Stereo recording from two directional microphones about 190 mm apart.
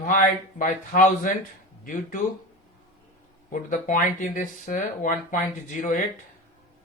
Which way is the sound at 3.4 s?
45° left (ahead or behind).